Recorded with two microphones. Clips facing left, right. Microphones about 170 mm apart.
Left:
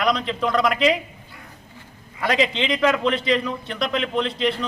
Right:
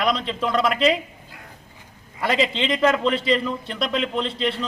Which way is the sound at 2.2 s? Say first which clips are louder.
Left 1 dB; centre (ahead or behind).